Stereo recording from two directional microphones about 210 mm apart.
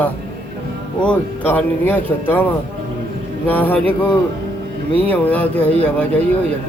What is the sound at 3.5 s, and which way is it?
Speech, 10° left (ahead or behind).